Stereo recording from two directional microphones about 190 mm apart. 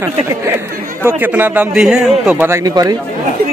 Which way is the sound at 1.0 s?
10° right (ahead or behind).